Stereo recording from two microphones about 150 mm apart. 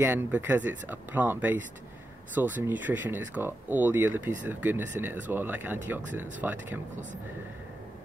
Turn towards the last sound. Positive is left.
turn(degrees=-55)  # may be behind; listen again after turning